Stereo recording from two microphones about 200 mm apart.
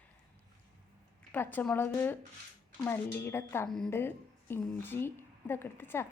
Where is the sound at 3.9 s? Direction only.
10° left (ahead or behind).